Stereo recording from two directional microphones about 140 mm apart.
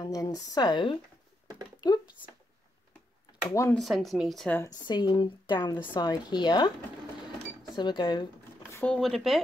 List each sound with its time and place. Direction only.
0.0 s speech: 25° left (ahead or behind)
1.8 s a sound: 30° left (ahead or behind)
3.4 s speech: 20° left (ahead or behind)
3.7 s speech: centre (ahead or behind)
4.8 s speech: 30° left (ahead or behind)
7.7 s speech: 30° left (ahead or behind)
8.7 s speech: 10° left (ahead or behind)